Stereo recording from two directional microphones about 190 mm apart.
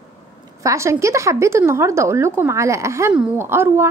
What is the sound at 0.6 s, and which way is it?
A woman's voice, 15° right (ahead or behind).